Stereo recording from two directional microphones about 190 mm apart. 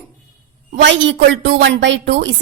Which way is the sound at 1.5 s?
65° right (ahead or behind).